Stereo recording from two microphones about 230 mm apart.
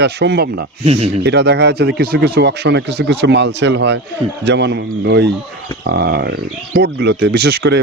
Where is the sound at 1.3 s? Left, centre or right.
Right.